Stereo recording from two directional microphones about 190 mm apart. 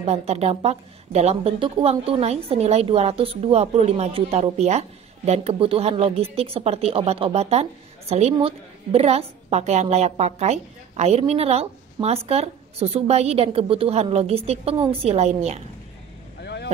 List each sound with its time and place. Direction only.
0.0 s a woman's voice: 35° right (ahead or behind)